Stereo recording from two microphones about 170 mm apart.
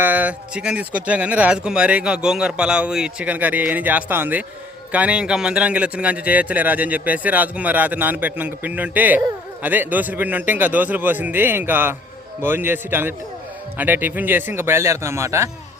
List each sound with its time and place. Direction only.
0.0 s a man's voice: 10° right (ahead or behind)